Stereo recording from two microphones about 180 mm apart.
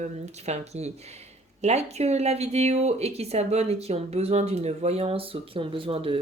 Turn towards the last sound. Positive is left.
turn(degrees=-30)  # may be behind; listen again after turning